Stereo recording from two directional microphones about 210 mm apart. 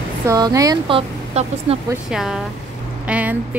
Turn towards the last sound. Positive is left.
turn(degrees=-5)  # may be behind; listen again after turning